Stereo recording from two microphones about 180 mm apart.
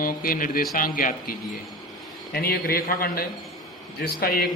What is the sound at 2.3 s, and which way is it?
A man's voice, 55° left (ahead or behind).